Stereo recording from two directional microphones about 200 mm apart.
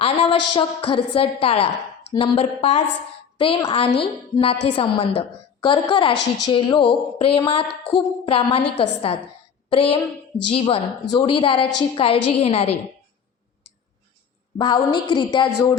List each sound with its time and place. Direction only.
0.0 s a woman's voice: 25° left (ahead or behind)
14.6 s a woman's voice: 20° left (ahead or behind)